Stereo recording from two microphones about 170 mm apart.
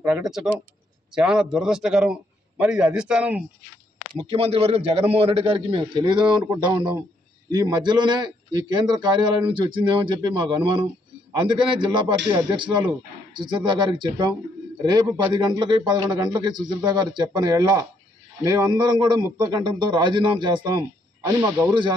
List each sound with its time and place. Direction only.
0.0 s a man's voice: 5° right (ahead or behind)
4.1 s a man's voice: 30° right (ahead or behind)
15.3 s a man's voice: 25° right (ahead or behind)